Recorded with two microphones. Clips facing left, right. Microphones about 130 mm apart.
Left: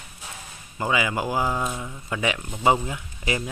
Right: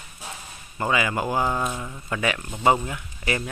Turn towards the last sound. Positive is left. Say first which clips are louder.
# even
turn(degrees=15)  # may be behind; listen again after turning